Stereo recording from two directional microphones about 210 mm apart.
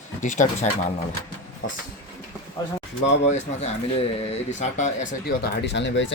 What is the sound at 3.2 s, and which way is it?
Speech, 35° left (ahead or behind).